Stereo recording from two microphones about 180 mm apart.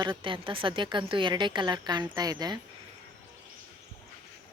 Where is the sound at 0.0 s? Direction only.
30° right (ahead or behind).